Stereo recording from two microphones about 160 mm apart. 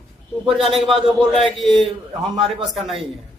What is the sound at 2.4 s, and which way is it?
Speech, centre (ahead or behind).